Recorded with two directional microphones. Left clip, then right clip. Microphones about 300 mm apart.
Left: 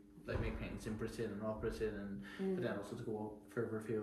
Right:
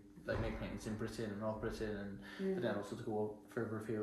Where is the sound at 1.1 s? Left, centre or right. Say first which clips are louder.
Right 1 dB; centre.